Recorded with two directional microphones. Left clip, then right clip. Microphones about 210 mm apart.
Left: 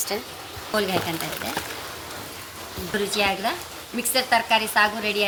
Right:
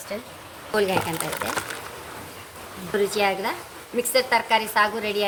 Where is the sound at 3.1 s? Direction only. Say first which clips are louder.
Left 3 dB; 35° right (ahead or behind).